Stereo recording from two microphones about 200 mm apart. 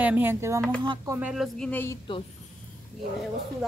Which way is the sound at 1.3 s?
Centre (ahead or behind).